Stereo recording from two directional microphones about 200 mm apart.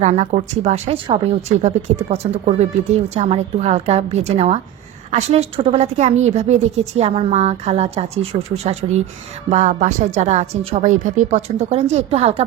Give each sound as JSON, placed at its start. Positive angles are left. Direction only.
{"t": 0.0, "sound": "speech", "side_deg": -35}